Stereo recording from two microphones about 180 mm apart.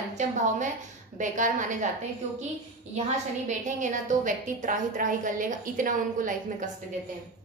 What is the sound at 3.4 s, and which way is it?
A woman's voice, 45° right (ahead or behind).